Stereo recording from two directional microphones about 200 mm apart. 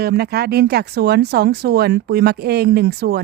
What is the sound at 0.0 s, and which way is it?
Speech, 55° right (ahead or behind).